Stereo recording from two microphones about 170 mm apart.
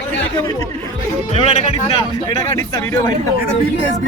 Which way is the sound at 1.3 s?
40° left (ahead or behind).